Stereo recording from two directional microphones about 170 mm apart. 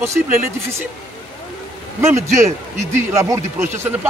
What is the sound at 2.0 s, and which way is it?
Speech, 15° right (ahead or behind).